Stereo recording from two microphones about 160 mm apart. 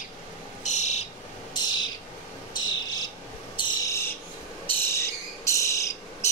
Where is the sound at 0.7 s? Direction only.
45° left (ahead or behind).